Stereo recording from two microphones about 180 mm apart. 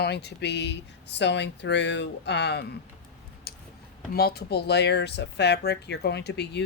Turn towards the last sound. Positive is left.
turn(degrees=65)  # may be behind; listen again after turning